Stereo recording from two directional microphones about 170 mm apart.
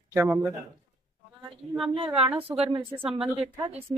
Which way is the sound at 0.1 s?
15° right (ahead or behind).